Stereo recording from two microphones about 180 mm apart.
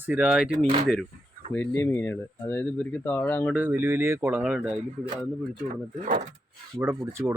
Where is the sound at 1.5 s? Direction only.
10° left (ahead or behind).